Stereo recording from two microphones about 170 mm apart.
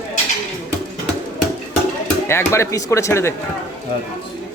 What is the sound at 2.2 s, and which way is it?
Speech, 15° left (ahead or behind).